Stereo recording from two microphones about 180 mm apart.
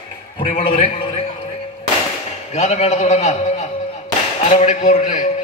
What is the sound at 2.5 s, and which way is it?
Speech, 35° left (ahead or behind).